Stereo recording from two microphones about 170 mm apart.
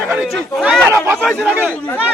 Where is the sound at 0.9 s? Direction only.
15° right (ahead or behind).